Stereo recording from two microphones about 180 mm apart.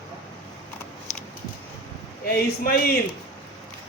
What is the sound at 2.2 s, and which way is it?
Speech, 55° left (ahead or behind).